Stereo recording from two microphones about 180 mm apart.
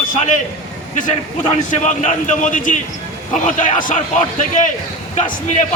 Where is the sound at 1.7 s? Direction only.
40° left (ahead or behind).